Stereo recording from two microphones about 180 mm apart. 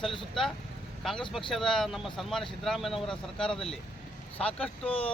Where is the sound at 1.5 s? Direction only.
Centre (ahead or behind).